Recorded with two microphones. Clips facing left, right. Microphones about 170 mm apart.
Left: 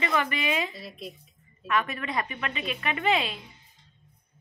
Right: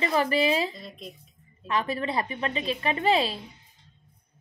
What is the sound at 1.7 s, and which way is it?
A woman's voice, 30° right (ahead or behind).